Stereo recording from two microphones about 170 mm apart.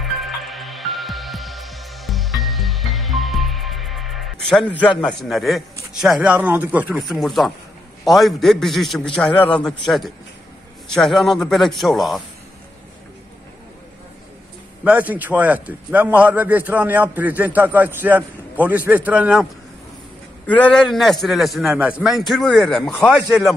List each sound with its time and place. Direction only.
0.0 s music: centre (ahead or behind)
8.0 s a man's voice: centre (ahead or behind)
14.9 s a man's voice: 10° right (ahead or behind)
20.4 s a man's voice: 10° left (ahead or behind)
22.9 s speech: 15° left (ahead or behind)